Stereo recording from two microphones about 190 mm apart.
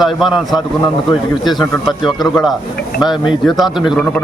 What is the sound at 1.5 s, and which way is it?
Speech, 25° left (ahead or behind).